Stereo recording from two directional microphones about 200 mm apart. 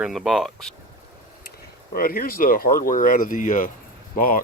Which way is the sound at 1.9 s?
45° left (ahead or behind).